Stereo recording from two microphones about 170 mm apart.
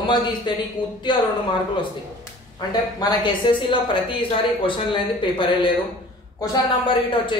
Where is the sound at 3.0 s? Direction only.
25° left (ahead or behind).